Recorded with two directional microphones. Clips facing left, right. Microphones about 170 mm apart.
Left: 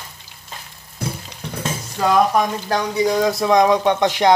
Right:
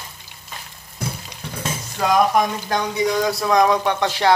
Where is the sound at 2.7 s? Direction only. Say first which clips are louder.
Left 4 dB; 30° left (ahead or behind).